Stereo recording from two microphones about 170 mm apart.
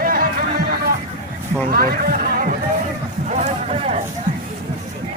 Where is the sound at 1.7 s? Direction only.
60° right (ahead or behind).